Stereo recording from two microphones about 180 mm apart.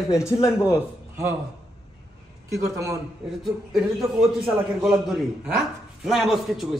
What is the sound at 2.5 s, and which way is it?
Speech, 15° right (ahead or behind).